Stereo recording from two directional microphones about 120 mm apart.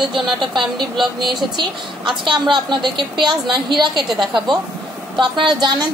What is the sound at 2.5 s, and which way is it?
A woman's voice, 40° right (ahead or behind).